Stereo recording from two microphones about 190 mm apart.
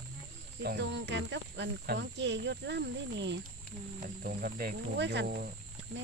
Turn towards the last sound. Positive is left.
turn(degrees=-60)  # may be behind; listen again after turning